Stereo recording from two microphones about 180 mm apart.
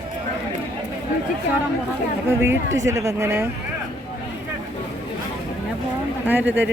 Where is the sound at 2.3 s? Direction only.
15° right (ahead or behind).